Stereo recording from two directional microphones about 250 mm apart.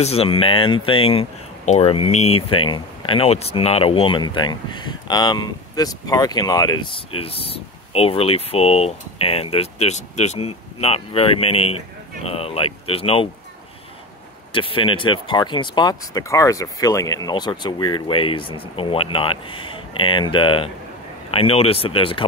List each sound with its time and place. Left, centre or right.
0.0 s speech: left
14.5 s speech: left